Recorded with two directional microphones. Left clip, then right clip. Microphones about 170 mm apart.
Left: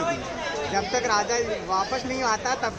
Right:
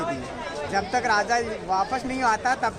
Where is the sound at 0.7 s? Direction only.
60° right (ahead or behind).